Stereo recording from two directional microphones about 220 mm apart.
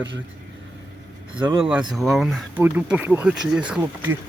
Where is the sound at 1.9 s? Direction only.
Centre (ahead or behind).